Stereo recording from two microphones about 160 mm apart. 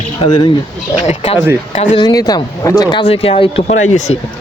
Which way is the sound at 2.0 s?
25° left (ahead or behind).